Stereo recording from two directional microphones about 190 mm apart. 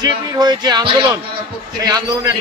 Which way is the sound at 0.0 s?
20° right (ahead or behind).